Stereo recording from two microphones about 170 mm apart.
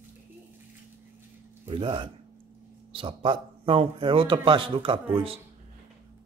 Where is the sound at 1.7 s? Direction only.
30° right (ahead or behind).